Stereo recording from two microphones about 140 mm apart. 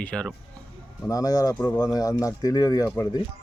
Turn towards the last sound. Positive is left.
turn(degrees=20)  # may be behind; listen again after turning